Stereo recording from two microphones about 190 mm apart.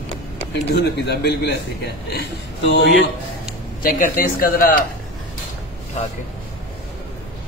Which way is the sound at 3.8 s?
45° left (ahead or behind).